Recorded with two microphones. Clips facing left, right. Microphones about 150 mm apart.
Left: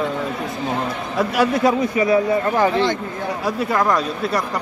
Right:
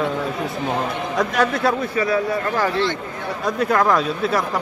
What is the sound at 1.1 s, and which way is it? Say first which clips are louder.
A man's voice: left 2 dB; 10° left (ahead or behind).